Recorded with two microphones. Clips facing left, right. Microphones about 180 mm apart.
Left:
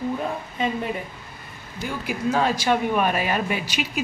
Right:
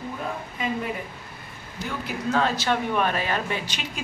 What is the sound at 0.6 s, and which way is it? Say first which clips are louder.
Speech: left 3 dB; 30° left (ahead or behind).